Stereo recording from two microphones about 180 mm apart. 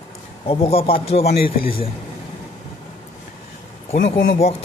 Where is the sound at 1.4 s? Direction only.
55° left (ahead or behind).